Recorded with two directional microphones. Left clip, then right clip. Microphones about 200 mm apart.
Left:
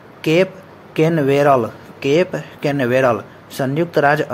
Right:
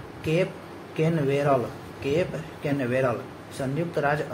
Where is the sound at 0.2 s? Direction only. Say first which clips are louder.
Left 10 dB; 40° left (ahead or behind).